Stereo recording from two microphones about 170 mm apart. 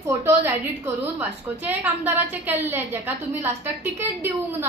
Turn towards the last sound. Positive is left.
turn(degrees=-10)  # may be behind; listen again after turning